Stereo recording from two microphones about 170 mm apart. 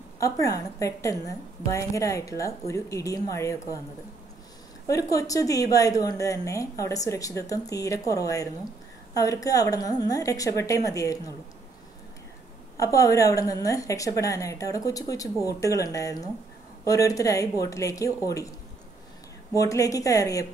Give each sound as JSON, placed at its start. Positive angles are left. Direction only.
{"t": 0.2, "sound": "a woman's voice", "side_deg": 20}
{"t": 4.8, "sound": "a woman's voice", "side_deg": 20}
{"t": 12.7, "sound": "a woman's voice", "side_deg": 20}
{"t": 19.5, "sound": "a woman's voice", "side_deg": 20}